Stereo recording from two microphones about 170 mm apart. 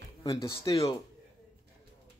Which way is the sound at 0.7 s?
35° left (ahead or behind).